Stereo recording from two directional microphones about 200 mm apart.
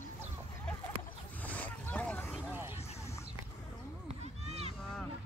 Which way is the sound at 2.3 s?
10° right (ahead or behind).